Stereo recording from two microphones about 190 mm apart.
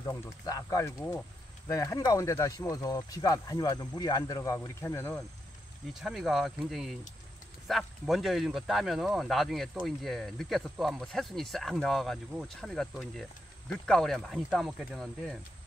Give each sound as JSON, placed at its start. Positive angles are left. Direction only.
{"t": 0.0, "sound": "speech", "side_deg": 20}
{"t": 5.9, "sound": "speech", "side_deg": 0}